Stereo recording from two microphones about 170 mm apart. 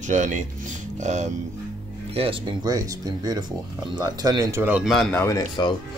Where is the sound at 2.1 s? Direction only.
35° right (ahead or behind).